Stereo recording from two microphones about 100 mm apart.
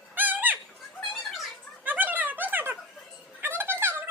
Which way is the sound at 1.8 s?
20° right (ahead or behind).